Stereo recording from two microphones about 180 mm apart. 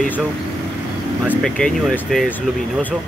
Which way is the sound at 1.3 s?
5° left (ahead or behind).